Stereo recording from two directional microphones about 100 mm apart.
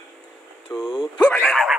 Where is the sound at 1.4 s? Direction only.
5° left (ahead or behind).